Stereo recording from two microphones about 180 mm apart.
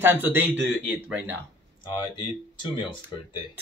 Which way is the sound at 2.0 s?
25° left (ahead or behind).